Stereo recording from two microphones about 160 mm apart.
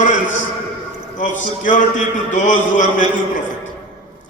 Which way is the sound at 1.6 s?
55° left (ahead or behind).